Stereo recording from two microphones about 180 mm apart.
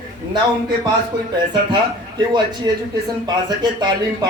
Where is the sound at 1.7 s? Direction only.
25° right (ahead or behind).